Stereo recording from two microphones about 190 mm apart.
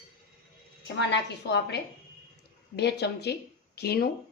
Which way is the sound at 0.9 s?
65° left (ahead or behind).